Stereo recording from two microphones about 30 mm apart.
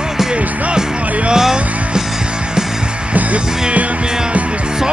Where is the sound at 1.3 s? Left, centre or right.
Right.